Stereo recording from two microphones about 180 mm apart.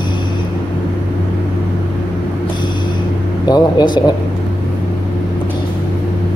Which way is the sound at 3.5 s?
20° left (ahead or behind).